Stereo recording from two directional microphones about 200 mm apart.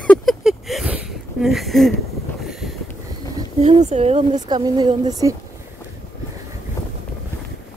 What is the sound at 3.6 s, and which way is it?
Speech, 35° right (ahead or behind).